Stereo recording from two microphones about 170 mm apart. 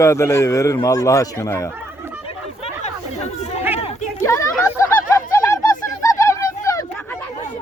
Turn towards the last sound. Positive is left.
turn(degrees=15)  # may be behind; listen again after turning